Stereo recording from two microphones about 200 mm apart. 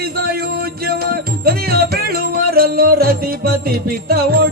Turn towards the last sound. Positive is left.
turn(degrees=-50)  # may be behind; listen again after turning